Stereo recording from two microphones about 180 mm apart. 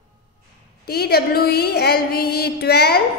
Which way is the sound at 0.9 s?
60° left (ahead or behind).